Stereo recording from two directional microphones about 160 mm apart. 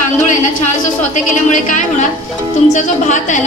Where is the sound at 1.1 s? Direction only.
50° left (ahead or behind).